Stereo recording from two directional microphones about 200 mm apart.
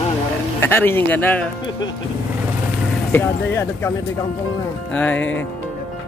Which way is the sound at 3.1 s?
10° left (ahead or behind).